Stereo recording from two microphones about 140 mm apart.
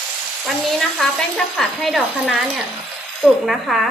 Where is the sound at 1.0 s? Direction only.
5° left (ahead or behind).